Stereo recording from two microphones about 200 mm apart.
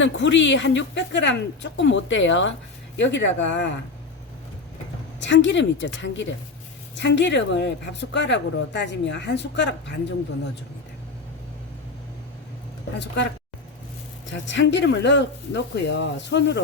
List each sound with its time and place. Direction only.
0.0 s speech: 65° left (ahead or behind)
5.2 s speech: 65° left (ahead or behind)
14.3 s speech: 65° left (ahead or behind)